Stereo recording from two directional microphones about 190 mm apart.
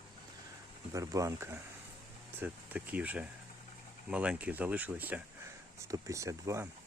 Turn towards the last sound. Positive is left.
turn(degrees=-15)  # may be behind; listen again after turning